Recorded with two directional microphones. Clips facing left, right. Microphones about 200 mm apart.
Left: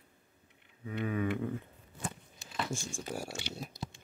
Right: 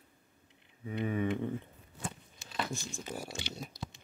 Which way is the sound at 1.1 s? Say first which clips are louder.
Even; centre (ahead or behind).